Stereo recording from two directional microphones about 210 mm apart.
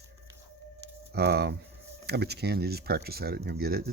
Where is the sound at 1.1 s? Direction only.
50° right (ahead or behind).